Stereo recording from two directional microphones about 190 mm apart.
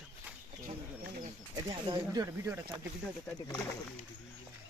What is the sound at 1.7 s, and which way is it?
Speech, 20° right (ahead or behind).